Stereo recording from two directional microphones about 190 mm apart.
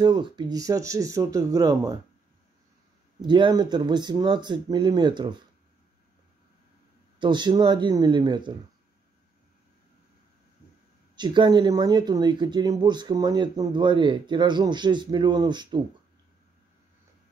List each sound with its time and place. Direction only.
0.0 s speech: 25° right (ahead or behind)
3.2 s speech: 25° right (ahead or behind)
7.2 s speech: 25° right (ahead or behind)
11.1 s speech: 25° right (ahead or behind)